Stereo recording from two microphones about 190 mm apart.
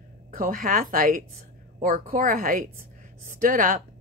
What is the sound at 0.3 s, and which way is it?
A woman's voice, 50° right (ahead or behind).